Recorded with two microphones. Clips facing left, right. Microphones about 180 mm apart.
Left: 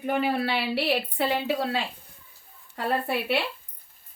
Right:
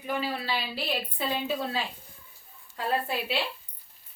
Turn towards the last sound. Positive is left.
turn(degrees=60)  # may be behind; listen again after turning